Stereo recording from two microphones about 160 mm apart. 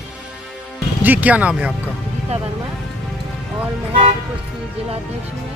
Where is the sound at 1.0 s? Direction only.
10° right (ahead or behind).